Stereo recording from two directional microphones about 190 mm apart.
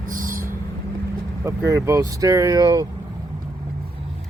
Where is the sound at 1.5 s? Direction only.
15° right (ahead or behind).